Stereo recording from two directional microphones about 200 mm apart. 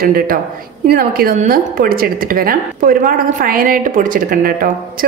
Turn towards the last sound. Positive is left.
turn(degrees=-45)  # may be behind; listen again after turning